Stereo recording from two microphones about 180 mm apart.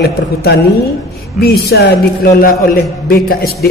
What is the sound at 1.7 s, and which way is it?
A woman's voice, 60° left (ahead or behind).